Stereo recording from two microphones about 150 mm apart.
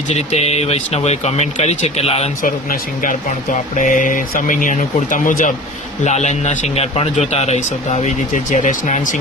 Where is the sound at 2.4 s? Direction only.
70° left (ahead or behind).